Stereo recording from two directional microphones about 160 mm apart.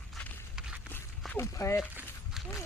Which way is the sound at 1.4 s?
15° left (ahead or behind).